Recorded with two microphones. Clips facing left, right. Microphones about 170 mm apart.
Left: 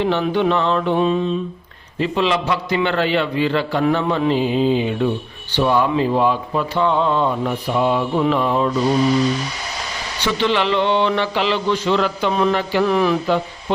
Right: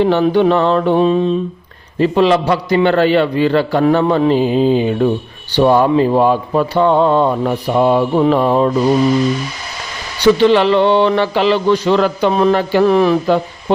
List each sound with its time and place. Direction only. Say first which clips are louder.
0.0 s a man's voice: right 6 dB; 40° right (ahead or behind)
10.4 s speech: right 4 dB; 40° right (ahead or behind)